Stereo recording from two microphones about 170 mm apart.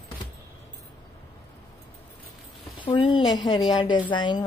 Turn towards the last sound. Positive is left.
turn(degrees=25)  # may be behind; listen again after turning